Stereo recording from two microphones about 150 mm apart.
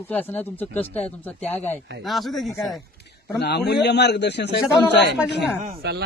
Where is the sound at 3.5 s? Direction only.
90° left.